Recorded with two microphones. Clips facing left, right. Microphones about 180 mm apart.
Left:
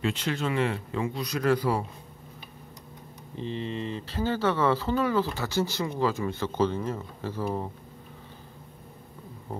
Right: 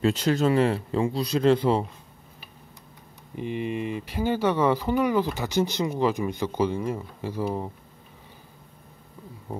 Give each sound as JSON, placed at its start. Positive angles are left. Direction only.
{"t": 0.0, "sound": "speech", "side_deg": -40}
{"t": 3.3, "sound": "speech", "side_deg": -15}